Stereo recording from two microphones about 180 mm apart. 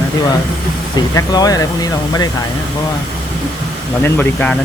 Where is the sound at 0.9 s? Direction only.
20° left (ahead or behind).